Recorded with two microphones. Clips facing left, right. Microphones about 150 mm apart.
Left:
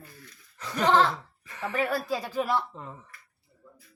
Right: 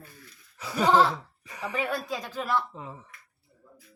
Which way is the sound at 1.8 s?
Centre (ahead or behind).